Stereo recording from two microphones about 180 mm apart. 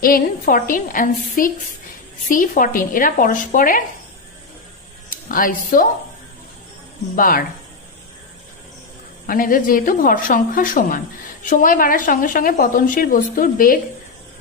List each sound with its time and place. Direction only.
0.0 s a woman's voice: 50° left (ahead or behind)
5.1 s speech: 50° left (ahead or behind)
7.2 s a woman's voice: 50° left (ahead or behind)
9.2 s a woman's voice: 50° left (ahead or behind)